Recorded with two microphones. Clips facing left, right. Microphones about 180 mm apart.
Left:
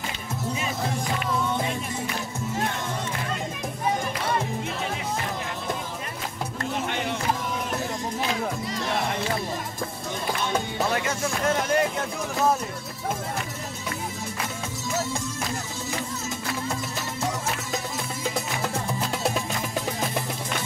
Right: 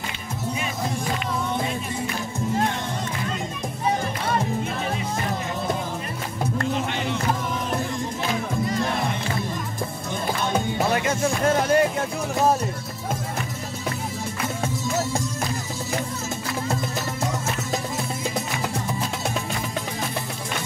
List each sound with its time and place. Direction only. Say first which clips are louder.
11.4 s music: right 3 dB; 35° right (ahead or behind)